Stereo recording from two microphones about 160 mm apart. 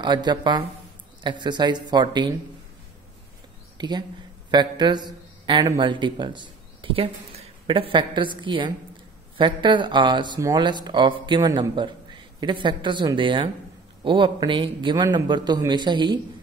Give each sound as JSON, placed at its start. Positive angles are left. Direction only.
{"t": 0.0, "sound": "speech", "side_deg": -25}
{"t": 3.7, "sound": "a man's voice", "side_deg": -25}